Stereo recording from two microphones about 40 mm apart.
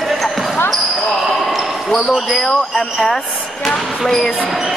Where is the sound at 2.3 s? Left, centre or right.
Centre.